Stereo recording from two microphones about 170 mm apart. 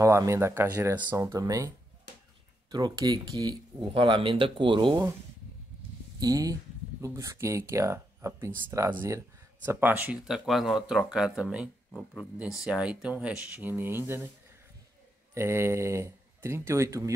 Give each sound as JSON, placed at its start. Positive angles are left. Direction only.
{"t": 0.0, "sound": "speech", "side_deg": -20}
{"t": 2.7, "sound": "speech", "side_deg": -20}
{"t": 6.1, "sound": "speech", "side_deg": -20}
{"t": 15.3, "sound": "speech", "side_deg": -15}